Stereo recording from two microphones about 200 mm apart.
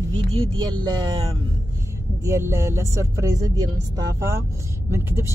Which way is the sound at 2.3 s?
15° right (ahead or behind).